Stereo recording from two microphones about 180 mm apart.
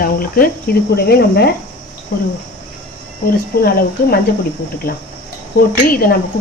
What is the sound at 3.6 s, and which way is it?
Speech, 55° left (ahead or behind).